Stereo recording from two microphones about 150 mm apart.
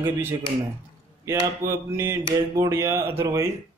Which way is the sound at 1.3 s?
20° right (ahead or behind).